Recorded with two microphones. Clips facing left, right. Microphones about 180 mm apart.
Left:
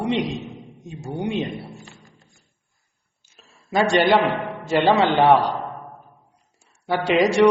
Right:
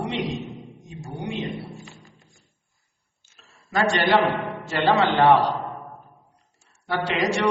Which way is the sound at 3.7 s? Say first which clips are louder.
Left 3 dB; 15° left (ahead or behind).